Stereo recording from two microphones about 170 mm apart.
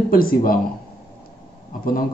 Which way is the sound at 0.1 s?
55° left (ahead or behind).